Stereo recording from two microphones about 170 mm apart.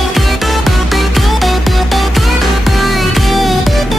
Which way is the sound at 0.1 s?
Centre (ahead or behind).